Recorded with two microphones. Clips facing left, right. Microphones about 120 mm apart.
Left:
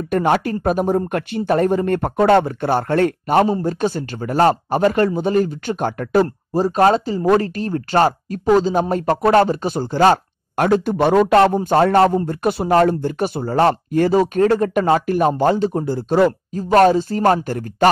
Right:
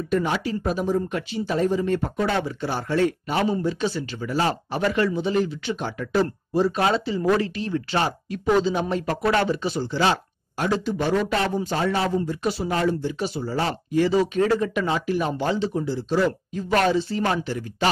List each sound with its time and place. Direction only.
0.1 s speech: 55° left (ahead or behind)
6.2 s speech: 40° left (ahead or behind)